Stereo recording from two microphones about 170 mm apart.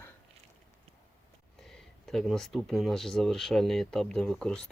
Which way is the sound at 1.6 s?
Centre (ahead or behind).